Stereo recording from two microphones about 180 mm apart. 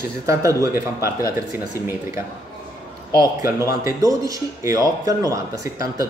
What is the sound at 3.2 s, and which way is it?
Speech, 15° right (ahead or behind).